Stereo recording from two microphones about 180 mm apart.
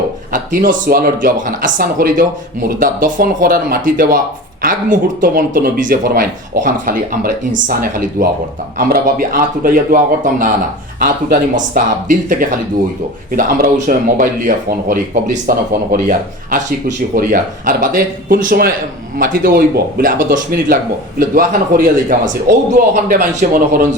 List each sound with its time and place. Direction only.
0.3 s speech: 50° right (ahead or behind)